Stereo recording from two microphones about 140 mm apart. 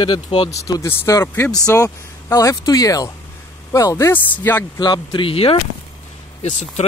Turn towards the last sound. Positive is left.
turn(degrees=55)  # may be behind; listen again after turning